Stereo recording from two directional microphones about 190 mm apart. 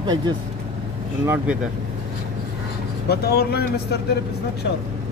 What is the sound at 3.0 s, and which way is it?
Speech, 55° left (ahead or behind).